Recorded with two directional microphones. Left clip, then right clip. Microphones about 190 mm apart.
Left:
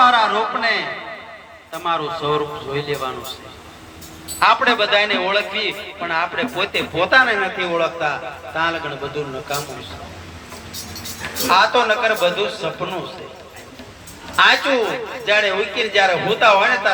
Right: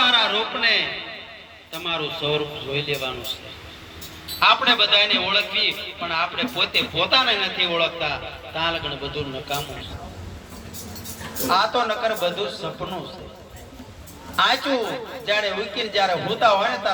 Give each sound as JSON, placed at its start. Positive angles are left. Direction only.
{"t": 0.0, "sound": "a sound", "side_deg": 25}
{"t": 2.4, "sound": "a man's voice", "side_deg": 30}
{"t": 4.4, "sound": "a man's voice", "side_deg": 35}
{"t": 7.3, "sound": "a man's voice", "side_deg": 20}
{"t": 11.4, "sound": "a man's voice", "side_deg": 20}
{"t": 14.3, "sound": "a man's voice", "side_deg": 20}